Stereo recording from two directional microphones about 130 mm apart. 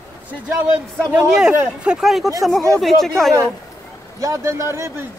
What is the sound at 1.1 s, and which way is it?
Speech, 5° right (ahead or behind).